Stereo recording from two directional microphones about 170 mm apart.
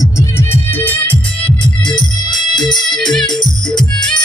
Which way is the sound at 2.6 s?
5° left (ahead or behind).